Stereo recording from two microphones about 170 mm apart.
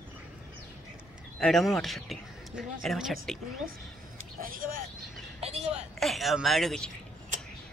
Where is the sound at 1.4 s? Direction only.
Centre (ahead or behind).